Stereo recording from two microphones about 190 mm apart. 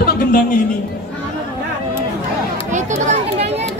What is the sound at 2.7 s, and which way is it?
Children playing, 40° right (ahead or behind).